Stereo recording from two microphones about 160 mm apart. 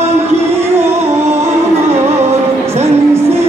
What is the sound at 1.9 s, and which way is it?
Music, 40° right (ahead or behind).